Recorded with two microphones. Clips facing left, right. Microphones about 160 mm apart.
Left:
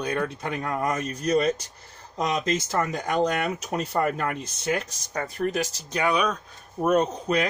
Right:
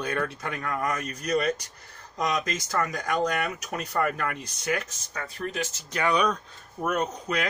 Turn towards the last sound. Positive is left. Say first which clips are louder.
# left 6 dB
turn(degrees=25)  # may be behind; listen again after turning